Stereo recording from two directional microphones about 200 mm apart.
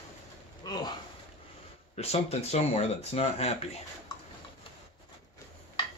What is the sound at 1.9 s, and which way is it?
Speech, 30° left (ahead or behind).